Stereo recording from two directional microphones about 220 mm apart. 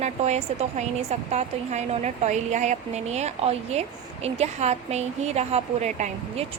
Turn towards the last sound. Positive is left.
turn(degrees=-30)  # may be behind; listen again after turning